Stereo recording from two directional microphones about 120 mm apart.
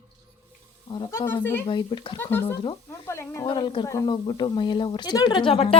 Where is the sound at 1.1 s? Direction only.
20° left (ahead or behind).